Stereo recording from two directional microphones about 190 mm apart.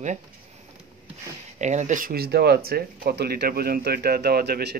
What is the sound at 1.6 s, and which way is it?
Speech, 40° right (ahead or behind).